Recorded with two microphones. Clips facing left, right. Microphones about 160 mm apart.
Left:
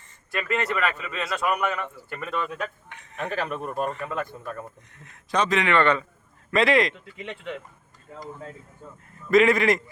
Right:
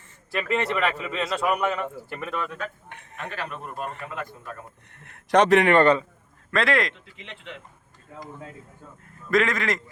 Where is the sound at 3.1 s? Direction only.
50° left (ahead or behind).